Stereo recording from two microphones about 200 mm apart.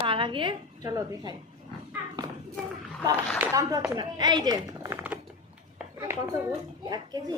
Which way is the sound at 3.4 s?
15° right (ahead or behind).